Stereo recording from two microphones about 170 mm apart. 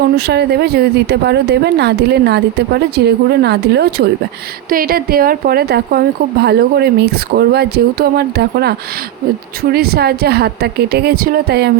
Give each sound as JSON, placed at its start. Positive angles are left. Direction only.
{"t": 0.3, "sound": "a woman's voice", "side_deg": -75}
{"t": 4.7, "sound": "speech", "side_deg": -60}
{"t": 9.7, "sound": "a woman's voice", "side_deg": -65}